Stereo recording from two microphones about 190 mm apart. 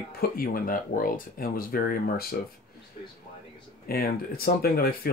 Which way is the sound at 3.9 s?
55° left (ahead or behind).